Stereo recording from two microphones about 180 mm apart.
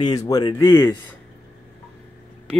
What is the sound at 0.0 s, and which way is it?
Speech, 20° left (ahead or behind).